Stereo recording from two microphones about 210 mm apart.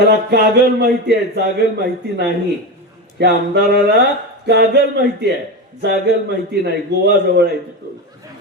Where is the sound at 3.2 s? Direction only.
50° right (ahead or behind).